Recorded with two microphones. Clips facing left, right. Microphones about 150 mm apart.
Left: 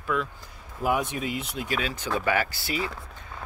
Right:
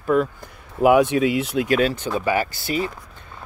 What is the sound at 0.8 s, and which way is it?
Speech, 90° right.